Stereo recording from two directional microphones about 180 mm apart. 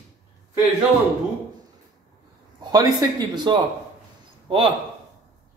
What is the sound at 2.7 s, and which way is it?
Speech, 20° right (ahead or behind).